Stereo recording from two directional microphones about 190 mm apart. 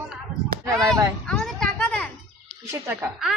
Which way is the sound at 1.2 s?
5° left (ahead or behind).